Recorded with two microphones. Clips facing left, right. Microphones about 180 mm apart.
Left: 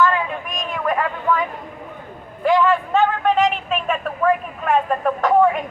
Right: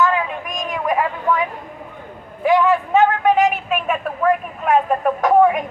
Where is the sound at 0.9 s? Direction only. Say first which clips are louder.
Right 1 dB; 10° right (ahead or behind).